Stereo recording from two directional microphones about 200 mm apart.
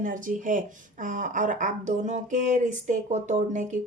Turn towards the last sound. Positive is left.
turn(degrees=-35)  # may be behind; listen again after turning